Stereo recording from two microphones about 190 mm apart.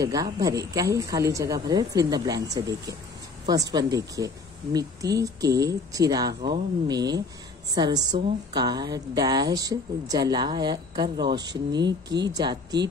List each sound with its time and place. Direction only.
0.0 s a woman's voice: 20° right (ahead or behind)